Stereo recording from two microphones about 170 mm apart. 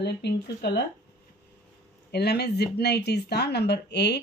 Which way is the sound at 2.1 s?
70° left (ahead or behind).